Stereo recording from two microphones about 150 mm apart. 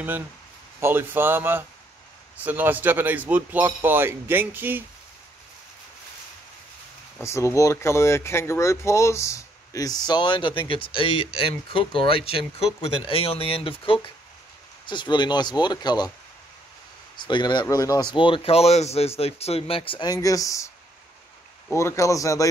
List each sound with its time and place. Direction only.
0.7 s speech: 15° right (ahead or behind)
7.2 s speech: 20° left (ahead or behind)
17.2 s speech: 30° left (ahead or behind)
21.7 s speech: 20° left (ahead or behind)